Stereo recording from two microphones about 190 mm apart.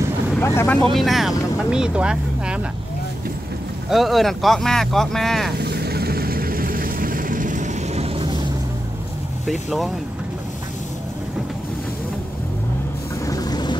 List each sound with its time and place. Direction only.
0.4 s speech: 15° left (ahead or behind)
0.9 s speech: centre (ahead or behind)
3.9 s speech: centre (ahead or behind)
5.6 s vehicle: 60° right (ahead or behind); by 8.5 s 25° right (ahead or behind)
9.5 s speech: centre (ahead or behind)
13.2 s vehicle: 20° left (ahead or behind)